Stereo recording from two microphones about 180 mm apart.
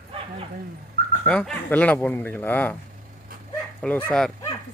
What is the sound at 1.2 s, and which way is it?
Speech, 5° left (ahead or behind).